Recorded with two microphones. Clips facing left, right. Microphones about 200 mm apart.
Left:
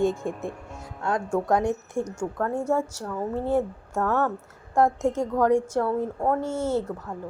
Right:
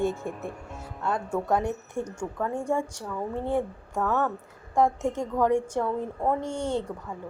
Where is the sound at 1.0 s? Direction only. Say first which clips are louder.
Left 3 dB; 10° left (ahead or behind).